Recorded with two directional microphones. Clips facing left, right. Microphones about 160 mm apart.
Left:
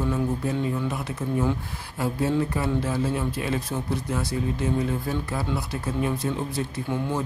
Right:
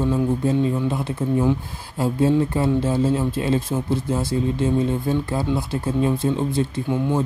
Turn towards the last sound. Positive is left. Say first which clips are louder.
# right 6 dB
turn(degrees=-25)  # may be behind; listen again after turning